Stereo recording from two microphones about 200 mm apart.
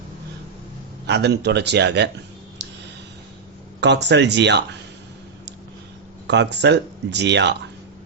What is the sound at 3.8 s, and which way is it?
Speech, 60° right (ahead or behind).